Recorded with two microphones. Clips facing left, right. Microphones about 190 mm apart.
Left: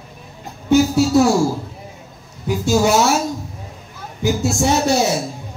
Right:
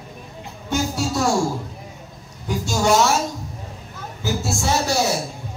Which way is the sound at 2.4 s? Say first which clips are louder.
Left 5 dB; 5° left (ahead or behind).